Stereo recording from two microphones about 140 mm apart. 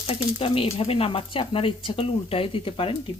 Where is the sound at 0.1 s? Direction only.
40° left (ahead or behind).